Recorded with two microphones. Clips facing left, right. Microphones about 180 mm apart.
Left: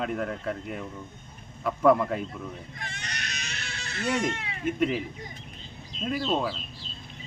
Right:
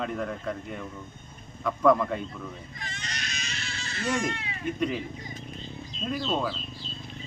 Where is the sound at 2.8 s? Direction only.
60° left (ahead or behind).